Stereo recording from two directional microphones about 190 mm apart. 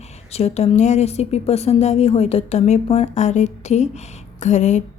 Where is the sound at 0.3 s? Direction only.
35° left (ahead or behind).